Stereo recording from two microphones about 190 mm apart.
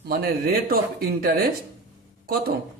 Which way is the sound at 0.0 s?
55° right (ahead or behind).